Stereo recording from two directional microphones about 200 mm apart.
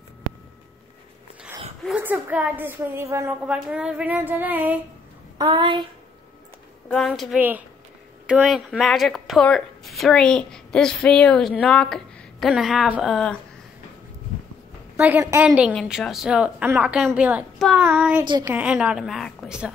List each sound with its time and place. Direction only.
1.8 s a woman's voice: 5° right (ahead or behind)
5.4 s speech: 25° right (ahead or behind)
6.9 s a woman's voice: centre (ahead or behind)
15.0 s a woman's voice: 10° right (ahead or behind)
18.2 s speech: 25° right (ahead or behind)
18.5 s a woman's voice: 5° right (ahead or behind)